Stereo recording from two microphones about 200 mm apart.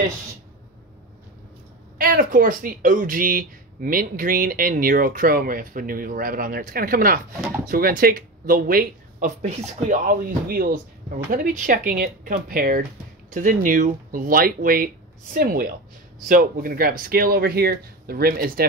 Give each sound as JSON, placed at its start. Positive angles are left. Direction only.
{"t": 2.0, "sound": "speech", "side_deg": -45}